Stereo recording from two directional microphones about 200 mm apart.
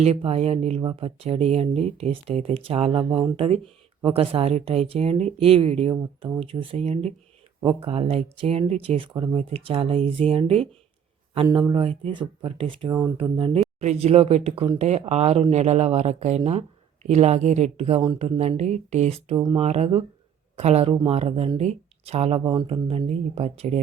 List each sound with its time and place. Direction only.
0.0 s speech: 30° right (ahead or behind)
11.4 s speech: 20° right (ahead or behind)